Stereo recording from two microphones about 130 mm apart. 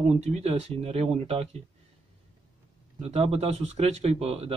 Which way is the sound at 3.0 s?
55° right (ahead or behind).